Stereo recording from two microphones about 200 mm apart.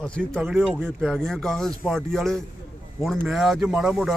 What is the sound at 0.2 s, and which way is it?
A man's voice, 5° right (ahead or behind).